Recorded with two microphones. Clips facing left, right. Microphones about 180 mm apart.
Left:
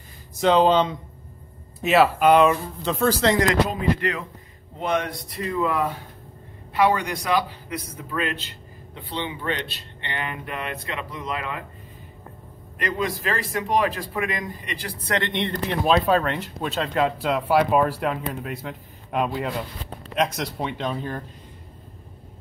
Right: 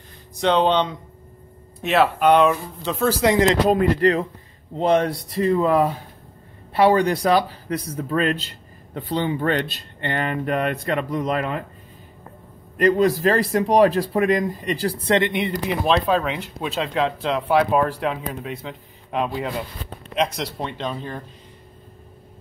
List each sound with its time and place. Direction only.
0.4 s speech: centre (ahead or behind)
3.9 s speech: 35° right (ahead or behind)
12.7 s speech: 40° right (ahead or behind)
15.0 s speech: 20° right (ahead or behind)
15.3 s speech: 5° right (ahead or behind)